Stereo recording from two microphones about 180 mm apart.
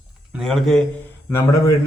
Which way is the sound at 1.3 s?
15° left (ahead or behind).